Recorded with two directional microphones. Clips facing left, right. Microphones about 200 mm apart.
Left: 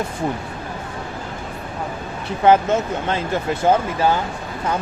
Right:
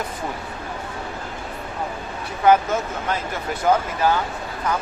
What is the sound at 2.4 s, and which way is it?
Speech, 25° left (ahead or behind).